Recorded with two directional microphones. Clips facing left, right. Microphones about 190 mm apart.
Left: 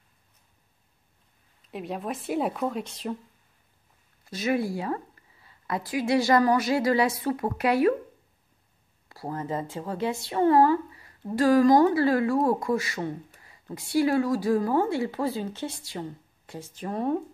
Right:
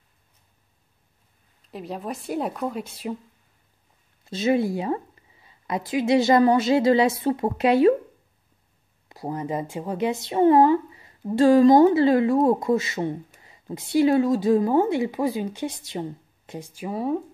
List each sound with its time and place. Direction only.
1.7 s a woman's voice: centre (ahead or behind)
4.2 s speech: 25° right (ahead or behind)
9.1 s a woman's voice: 20° right (ahead or behind)